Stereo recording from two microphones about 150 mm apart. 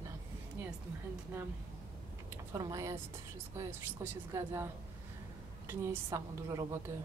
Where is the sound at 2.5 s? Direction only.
20° right (ahead or behind).